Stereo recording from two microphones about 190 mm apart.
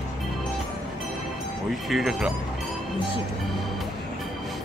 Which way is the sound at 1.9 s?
Centre (ahead or behind).